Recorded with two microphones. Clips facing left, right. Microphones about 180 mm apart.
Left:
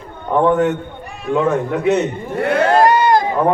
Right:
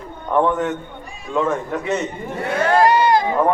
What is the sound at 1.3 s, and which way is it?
Speech, 65° left (ahead or behind).